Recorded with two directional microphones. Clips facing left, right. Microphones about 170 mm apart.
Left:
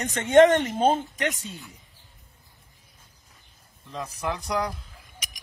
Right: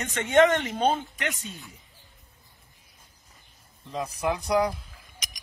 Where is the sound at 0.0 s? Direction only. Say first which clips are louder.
Left 4 dB; 40° left (ahead or behind).